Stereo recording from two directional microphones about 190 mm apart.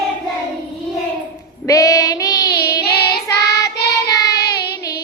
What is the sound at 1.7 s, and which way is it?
Child singing, 20° left (ahead or behind).